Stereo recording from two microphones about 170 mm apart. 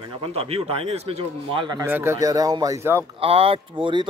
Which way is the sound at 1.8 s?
15° right (ahead or behind).